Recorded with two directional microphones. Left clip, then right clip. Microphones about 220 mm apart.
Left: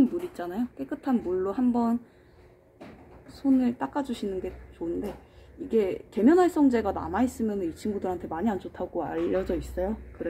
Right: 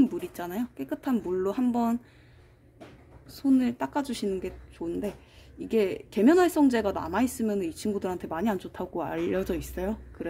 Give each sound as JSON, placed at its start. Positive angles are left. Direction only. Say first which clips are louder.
{"t": 0.3, "sound": "speech", "louder": "left 1 dB", "side_deg": -55}
{"t": 3.3, "sound": "speech", "louder": "even", "side_deg": -55}